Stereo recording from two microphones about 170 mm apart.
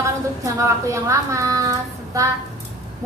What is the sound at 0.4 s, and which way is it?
A woman's voice, 20° right (ahead or behind).